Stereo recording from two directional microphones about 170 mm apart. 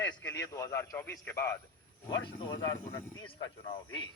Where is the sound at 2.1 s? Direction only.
25° left (ahead or behind).